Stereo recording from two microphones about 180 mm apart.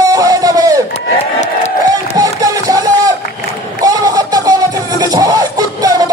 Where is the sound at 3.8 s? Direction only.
20° right (ahead or behind).